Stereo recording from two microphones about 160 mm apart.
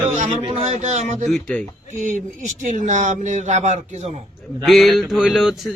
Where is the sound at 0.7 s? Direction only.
45° right (ahead or behind).